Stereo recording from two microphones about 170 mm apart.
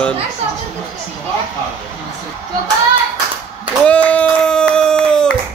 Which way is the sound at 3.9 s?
10° left (ahead or behind).